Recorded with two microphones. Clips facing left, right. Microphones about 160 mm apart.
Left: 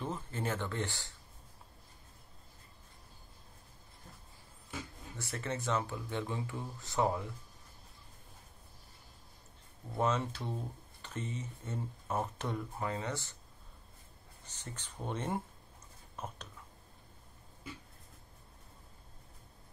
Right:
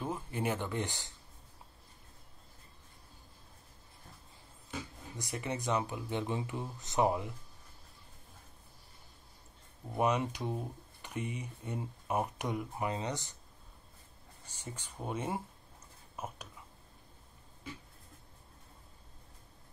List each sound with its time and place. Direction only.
0.0 s speech: 10° right (ahead or behind)
5.1 s speech: 15° right (ahead or behind)
9.9 s speech: 15° right (ahead or behind)
14.4 s speech: 10° right (ahead or behind)